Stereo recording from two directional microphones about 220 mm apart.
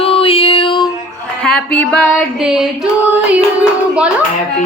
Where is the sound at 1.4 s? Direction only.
5° left (ahead or behind).